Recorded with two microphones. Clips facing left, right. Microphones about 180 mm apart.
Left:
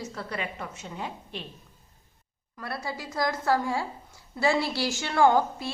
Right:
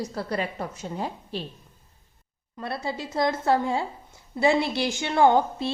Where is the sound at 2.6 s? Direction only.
25° right (ahead or behind).